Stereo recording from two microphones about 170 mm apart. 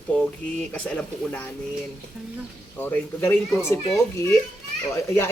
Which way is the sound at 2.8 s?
10° left (ahead or behind).